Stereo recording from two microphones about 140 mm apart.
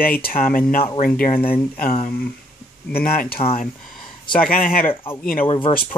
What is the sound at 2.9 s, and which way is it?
Speech, 90° left.